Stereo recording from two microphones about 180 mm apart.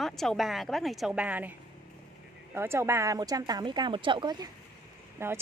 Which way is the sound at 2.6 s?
15° right (ahead or behind).